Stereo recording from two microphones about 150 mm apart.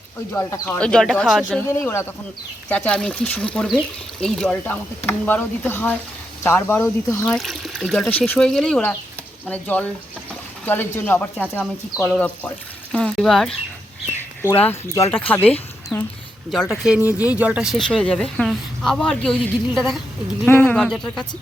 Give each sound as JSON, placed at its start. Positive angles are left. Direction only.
{"t": 0.3, "sound": "speech", "side_deg": 20}
{"t": 1.8, "sound": "speech", "side_deg": 15}
{"t": 7.3, "sound": "speech", "side_deg": 0}
{"t": 14.4, "sound": "speech", "side_deg": 15}
{"t": 16.5, "sound": "speech", "side_deg": 0}
{"t": 20.5, "sound": "speech", "side_deg": 15}